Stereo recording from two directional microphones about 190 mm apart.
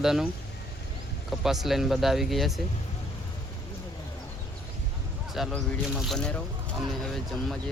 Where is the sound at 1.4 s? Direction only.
Centre (ahead or behind).